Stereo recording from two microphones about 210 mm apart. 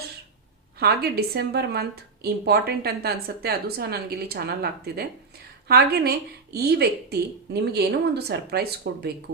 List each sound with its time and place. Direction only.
0.8 s a woman's voice: 50° right (ahead or behind)